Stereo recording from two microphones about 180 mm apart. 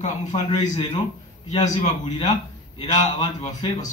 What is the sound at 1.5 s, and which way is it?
Speech, 40° left (ahead or behind).